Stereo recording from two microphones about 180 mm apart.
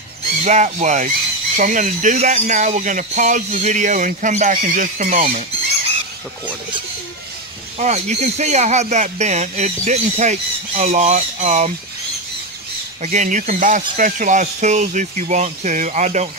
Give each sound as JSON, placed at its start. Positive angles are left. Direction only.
{"t": 0.5, "sound": "speech", "side_deg": -40}
{"t": 7.8, "sound": "speech", "side_deg": -40}
{"t": 13.0, "sound": "speech", "side_deg": -45}